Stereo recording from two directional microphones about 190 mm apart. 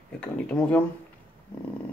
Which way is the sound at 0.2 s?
5° left (ahead or behind).